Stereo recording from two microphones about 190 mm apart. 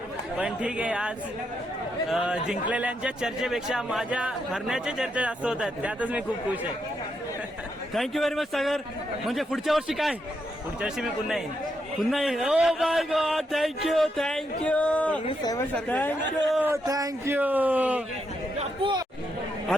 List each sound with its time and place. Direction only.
0.3 s speech: 5° right (ahead or behind)
7.9 s speech: centre (ahead or behind)
16.5 s speech: 10° right (ahead or behind)
18.8 s chatter: 20° right (ahead or behind)